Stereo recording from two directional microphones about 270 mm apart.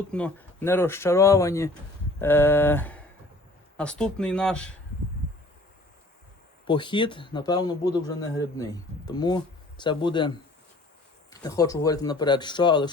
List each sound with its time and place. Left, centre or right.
0.1 s a man's voice: centre
6.7 s a man's voice: centre